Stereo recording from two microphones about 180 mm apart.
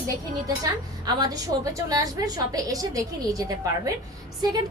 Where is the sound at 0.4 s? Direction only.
20° right (ahead or behind).